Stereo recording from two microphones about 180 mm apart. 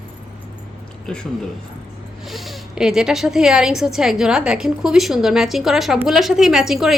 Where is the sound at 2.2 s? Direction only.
Centre (ahead or behind).